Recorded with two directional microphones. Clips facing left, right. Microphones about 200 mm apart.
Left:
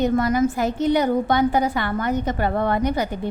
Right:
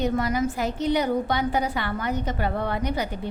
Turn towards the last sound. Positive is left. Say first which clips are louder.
# left 5 dB
turn(degrees=50)  # may be behind; listen again after turning